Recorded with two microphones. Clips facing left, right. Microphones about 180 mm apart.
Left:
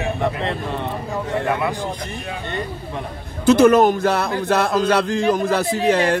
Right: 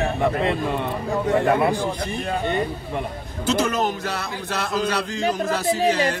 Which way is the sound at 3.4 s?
55° left (ahead or behind).